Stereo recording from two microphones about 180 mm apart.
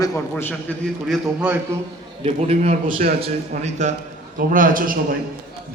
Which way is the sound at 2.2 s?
35° right (ahead or behind).